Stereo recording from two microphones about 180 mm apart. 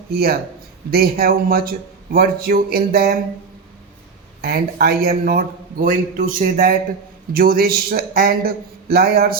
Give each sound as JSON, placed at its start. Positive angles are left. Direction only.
{"t": 0.1, "sound": "a man's voice", "side_deg": -55}
{"t": 4.4, "sound": "a man's voice", "side_deg": -60}